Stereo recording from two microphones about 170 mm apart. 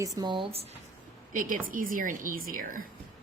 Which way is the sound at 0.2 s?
30° right (ahead or behind).